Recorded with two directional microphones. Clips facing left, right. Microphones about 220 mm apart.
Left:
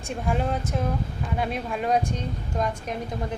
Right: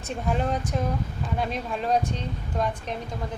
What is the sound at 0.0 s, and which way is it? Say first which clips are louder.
Speech: even; 5° left (ahead or behind).